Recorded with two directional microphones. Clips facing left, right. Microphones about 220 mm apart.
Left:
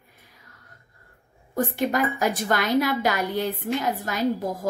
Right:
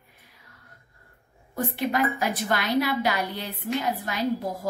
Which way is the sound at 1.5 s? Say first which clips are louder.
Left 2 dB; 45° left (ahead or behind).